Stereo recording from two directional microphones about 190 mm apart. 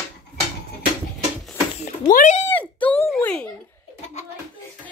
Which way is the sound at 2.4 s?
10° left (ahead or behind).